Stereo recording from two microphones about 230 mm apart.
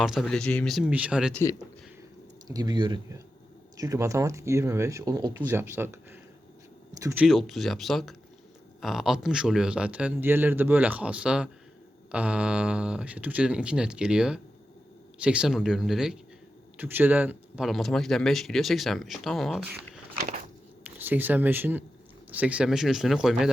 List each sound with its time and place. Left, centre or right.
0.0 s speech: centre
2.5 s speech: centre